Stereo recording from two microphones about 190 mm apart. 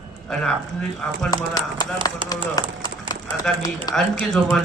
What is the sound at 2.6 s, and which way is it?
Speech, 20° left (ahead or behind).